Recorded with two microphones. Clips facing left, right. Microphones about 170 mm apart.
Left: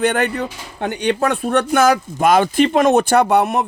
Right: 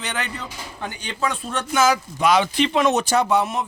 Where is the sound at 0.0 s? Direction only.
55° left (ahead or behind).